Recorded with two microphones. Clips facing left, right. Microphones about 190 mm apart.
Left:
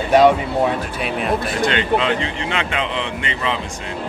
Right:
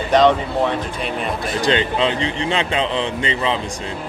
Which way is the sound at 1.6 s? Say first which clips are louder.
Right 1 dB; 30° right (ahead or behind).